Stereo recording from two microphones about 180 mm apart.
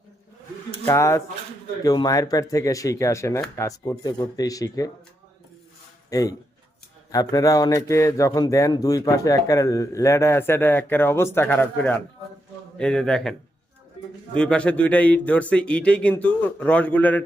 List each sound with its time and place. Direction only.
0.9 s a man's voice: 15° left (ahead or behind)
6.1 s a man's voice: 20° left (ahead or behind); by 13.3 s 5° left (ahead or behind)
14.3 s a man's voice: 5° left (ahead or behind)